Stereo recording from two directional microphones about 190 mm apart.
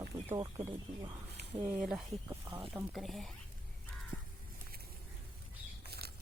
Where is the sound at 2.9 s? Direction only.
Centre (ahead or behind).